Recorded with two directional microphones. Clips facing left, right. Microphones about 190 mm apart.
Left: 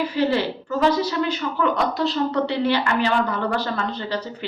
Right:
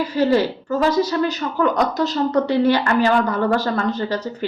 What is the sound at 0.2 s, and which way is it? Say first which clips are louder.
A woman's voice: right 5 dB; 40° right (ahead or behind).